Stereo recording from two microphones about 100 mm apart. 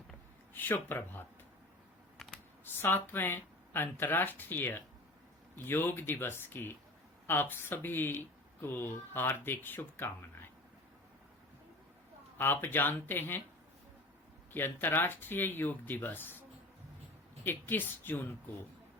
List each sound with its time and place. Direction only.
0.5 s speech: 20° left (ahead or behind)
2.1 s a sound: centre (ahead or behind)
2.8 s speech: 20° left (ahead or behind)
12.4 s speech: 20° left (ahead or behind)
14.5 s speech: 20° left (ahead or behind)
17.4 s speech: 20° left (ahead or behind)